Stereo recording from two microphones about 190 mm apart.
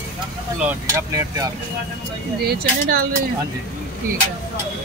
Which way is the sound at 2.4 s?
50° right (ahead or behind).